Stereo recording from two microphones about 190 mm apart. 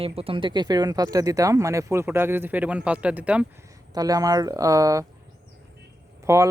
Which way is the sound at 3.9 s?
20° right (ahead or behind).